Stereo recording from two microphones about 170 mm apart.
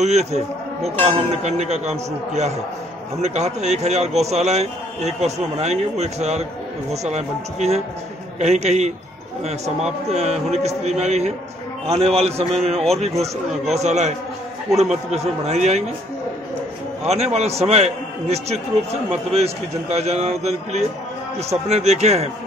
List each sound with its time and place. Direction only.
0.0 s a man's voice: 40° right (ahead or behind)
17.0 s a man's voice: 40° right (ahead or behind)